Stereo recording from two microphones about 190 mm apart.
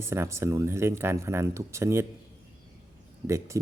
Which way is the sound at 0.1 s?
15° right (ahead or behind).